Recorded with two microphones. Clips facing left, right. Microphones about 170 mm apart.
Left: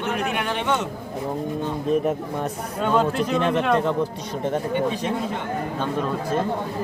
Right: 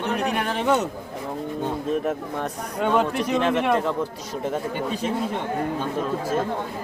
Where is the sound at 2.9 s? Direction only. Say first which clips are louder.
Left 2 dB; 15° right (ahead or behind).